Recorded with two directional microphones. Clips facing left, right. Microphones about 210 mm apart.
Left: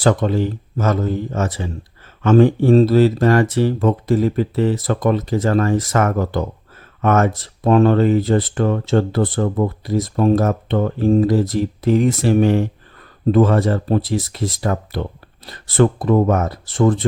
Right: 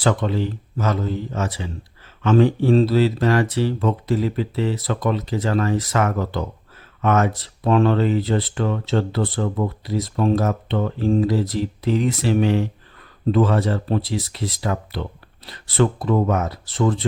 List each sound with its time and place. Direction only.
0.0 s speech: 45° left (ahead or behind)